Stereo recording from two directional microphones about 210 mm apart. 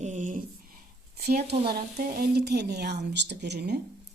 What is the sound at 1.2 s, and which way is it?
A woman's voice, 50° right (ahead or behind).